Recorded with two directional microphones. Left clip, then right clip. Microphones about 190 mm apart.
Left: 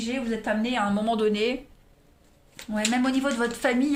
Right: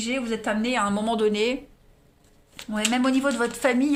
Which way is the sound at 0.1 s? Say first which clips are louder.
Right 1 dB; 45° right (ahead or behind).